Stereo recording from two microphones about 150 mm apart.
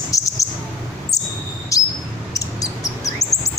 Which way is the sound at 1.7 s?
20° left (ahead or behind).